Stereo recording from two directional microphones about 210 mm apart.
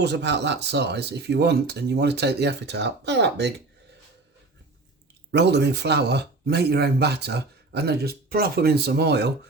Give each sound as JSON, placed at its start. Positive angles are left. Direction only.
{"t": 0.0, "sound": "speech", "side_deg": -55}
{"t": 5.3, "sound": "speech", "side_deg": -55}